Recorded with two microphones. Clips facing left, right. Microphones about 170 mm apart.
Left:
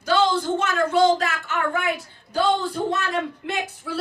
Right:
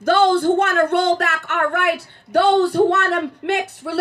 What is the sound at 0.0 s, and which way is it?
Speech, 55° right (ahead or behind).